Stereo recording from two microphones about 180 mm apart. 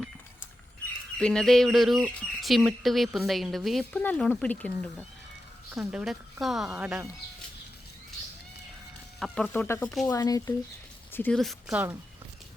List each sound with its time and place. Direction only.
1.2 s speech: 5° left (ahead or behind)
5.7 s speech: 5° right (ahead or behind)
9.1 s speech: centre (ahead or behind)
9.5 s speech: 10° left (ahead or behind)
11.1 s speech: 5° left (ahead or behind); by 11.9 s 10° right (ahead or behind)